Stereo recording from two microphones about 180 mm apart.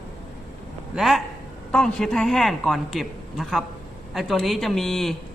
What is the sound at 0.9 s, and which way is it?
Speech, centre (ahead or behind).